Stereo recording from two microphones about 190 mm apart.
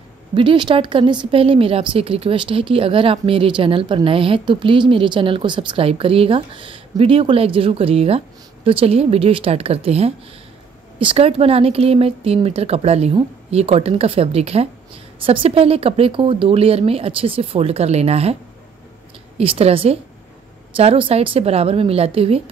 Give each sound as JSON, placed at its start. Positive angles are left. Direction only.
{"t": 0.3, "sound": "a woman's voice", "side_deg": -25}
{"t": 19.3, "sound": "a woman's voice", "side_deg": -30}